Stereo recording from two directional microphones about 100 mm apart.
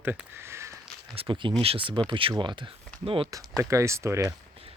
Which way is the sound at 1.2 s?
60° right (ahead or behind).